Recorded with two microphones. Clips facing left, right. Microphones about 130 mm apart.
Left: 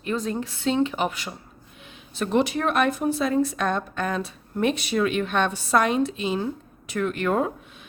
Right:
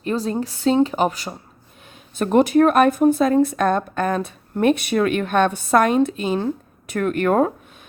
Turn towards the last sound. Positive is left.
turn(degrees=-50)  # may be behind; listen again after turning